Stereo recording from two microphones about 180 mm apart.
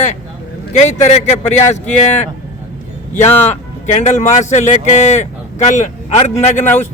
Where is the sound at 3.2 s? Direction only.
40° left (ahead or behind).